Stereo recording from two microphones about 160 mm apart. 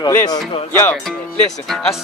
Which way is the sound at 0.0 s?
25° left (ahead or behind).